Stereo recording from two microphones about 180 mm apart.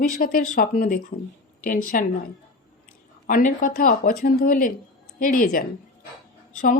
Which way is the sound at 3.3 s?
50° left (ahead or behind).